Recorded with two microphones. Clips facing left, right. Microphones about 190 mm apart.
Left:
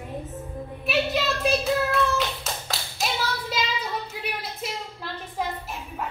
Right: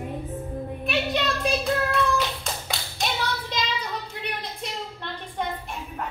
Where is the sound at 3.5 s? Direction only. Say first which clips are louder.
Left 1 dB; 5° left (ahead or behind).